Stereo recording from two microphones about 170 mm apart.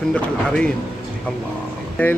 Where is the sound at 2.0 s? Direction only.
10° left (ahead or behind).